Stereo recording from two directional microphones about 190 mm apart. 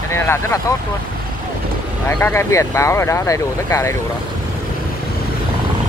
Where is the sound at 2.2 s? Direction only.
10° left (ahead or behind).